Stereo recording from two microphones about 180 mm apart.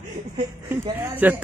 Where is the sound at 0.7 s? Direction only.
10° right (ahead or behind).